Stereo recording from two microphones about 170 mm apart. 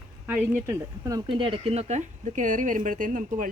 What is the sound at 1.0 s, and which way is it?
A woman's voice, 20° right (ahead or behind).